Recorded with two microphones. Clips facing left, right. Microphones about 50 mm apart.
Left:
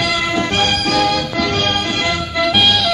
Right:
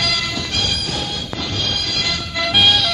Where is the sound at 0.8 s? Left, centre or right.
Left.